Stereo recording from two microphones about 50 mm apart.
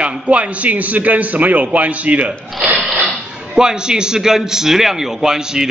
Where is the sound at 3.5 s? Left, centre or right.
Centre.